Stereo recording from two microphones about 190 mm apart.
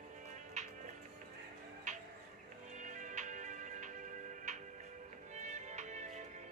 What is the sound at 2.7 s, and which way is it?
Music, 40° right (ahead or behind).